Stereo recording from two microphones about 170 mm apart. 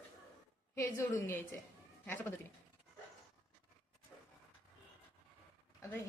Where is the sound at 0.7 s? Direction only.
15° left (ahead or behind).